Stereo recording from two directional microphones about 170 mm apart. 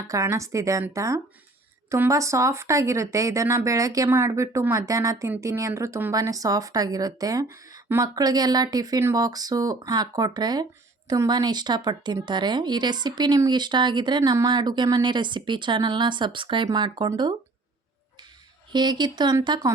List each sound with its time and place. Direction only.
0.1 s a woman's voice: 20° right (ahead or behind)
18.7 s speech: 25° right (ahead or behind)